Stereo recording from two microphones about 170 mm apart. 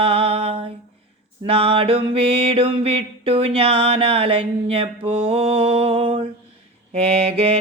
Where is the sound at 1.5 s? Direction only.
35° right (ahead or behind).